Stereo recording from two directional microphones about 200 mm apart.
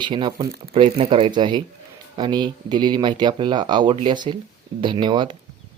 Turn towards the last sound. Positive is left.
turn(degrees=-25)  # may be behind; listen again after turning